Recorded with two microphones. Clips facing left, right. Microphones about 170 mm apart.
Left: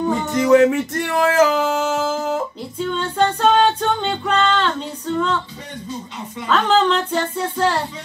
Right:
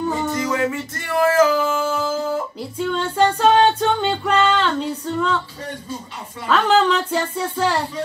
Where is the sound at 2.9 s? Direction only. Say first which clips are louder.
Right 1 dB; centre (ahead or behind).